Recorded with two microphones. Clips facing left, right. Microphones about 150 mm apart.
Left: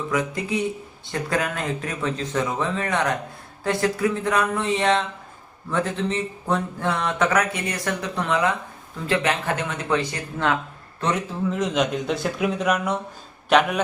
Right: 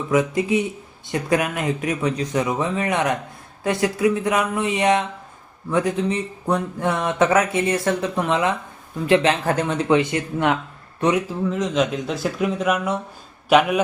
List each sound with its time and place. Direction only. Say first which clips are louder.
0.1 s speech: right 8 dB; 20° right (ahead or behind)
11.4 s speech: left 1 dB; centre (ahead or behind)